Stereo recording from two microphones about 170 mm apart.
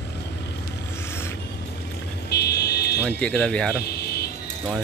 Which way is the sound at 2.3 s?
75° left (ahead or behind).